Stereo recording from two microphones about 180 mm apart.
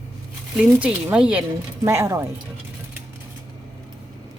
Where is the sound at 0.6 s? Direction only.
5° right (ahead or behind).